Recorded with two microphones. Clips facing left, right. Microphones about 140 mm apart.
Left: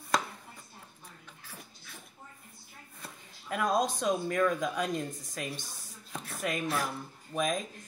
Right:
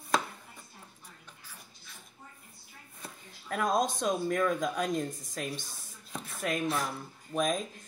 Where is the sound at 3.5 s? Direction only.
5° left (ahead or behind).